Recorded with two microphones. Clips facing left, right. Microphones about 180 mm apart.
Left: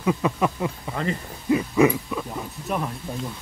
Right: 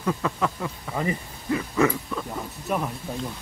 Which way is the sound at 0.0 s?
15° left (ahead or behind).